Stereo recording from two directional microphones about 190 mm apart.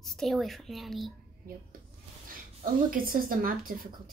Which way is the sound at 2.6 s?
50° right (ahead or behind).